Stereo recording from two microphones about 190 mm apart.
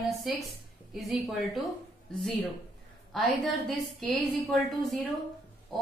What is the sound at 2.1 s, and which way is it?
A woman's voice, 5° left (ahead or behind).